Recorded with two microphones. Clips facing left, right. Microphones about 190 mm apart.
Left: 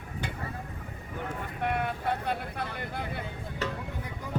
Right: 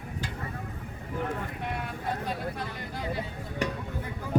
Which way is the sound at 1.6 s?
60° left (ahead or behind).